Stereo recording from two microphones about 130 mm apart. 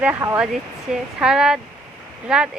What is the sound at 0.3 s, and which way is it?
A woman's voice, centre (ahead or behind).